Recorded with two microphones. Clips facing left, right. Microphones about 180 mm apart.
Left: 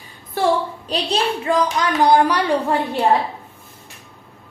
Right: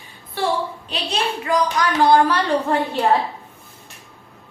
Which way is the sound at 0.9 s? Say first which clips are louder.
Left 5 dB; 35° left (ahead or behind).